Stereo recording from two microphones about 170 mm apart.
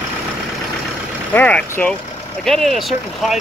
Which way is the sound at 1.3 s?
10° left (ahead or behind).